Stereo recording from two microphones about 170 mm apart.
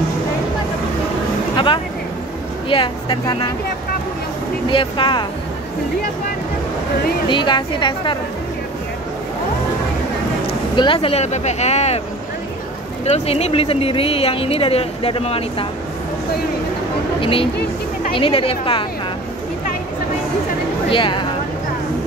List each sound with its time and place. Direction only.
2.7 s a woman's voice: 30° left (ahead or behind)
4.6 s a woman's voice: 30° left (ahead or behind)
7.2 s a woman's voice: 25° left (ahead or behind)
10.4 s speech: 30° left (ahead or behind)
13.0 s speech: 40° left (ahead or behind)
17.2 s speech: 30° left (ahead or behind)
20.9 s a woman's voice: 30° left (ahead or behind)